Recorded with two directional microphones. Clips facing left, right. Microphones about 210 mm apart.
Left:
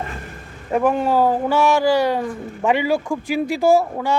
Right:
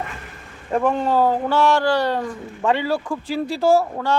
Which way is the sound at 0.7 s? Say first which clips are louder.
Left 2 dB; 5° left (ahead or behind).